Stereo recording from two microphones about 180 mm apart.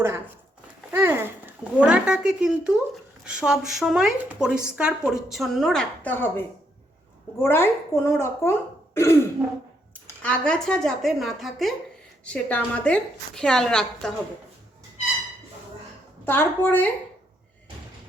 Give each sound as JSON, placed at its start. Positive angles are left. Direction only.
{"t": 0.0, "sound": "speech", "side_deg": -15}
{"t": 0.9, "sound": "a sound", "side_deg": -10}
{"t": 3.2, "sound": "a woman's voice", "side_deg": -5}
{"t": 9.9, "sound": "speech", "side_deg": 5}
{"t": 16.2, "sound": "a woman's voice", "side_deg": 10}